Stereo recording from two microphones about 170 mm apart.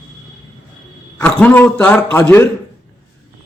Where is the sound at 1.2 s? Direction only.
10° left (ahead or behind).